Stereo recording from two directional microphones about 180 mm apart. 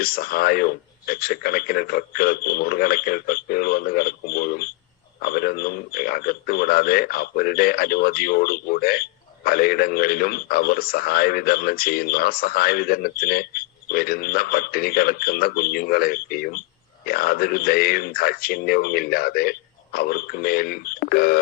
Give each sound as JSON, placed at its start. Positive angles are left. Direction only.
{"t": 0.0, "sound": "a man's voice", "side_deg": 55}